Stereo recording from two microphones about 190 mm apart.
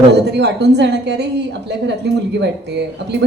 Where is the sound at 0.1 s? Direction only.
65° right (ahead or behind).